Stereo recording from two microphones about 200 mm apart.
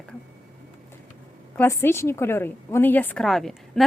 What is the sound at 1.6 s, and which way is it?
A woman's voice, 15° left (ahead or behind).